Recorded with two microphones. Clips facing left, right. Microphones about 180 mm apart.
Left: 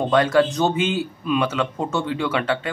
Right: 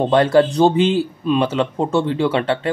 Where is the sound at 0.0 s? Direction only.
30° right (ahead or behind).